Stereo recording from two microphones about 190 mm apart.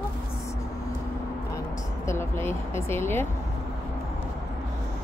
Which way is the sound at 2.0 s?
15° left (ahead or behind).